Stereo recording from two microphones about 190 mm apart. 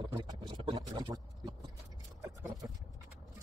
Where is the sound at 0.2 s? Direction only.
25° right (ahead or behind).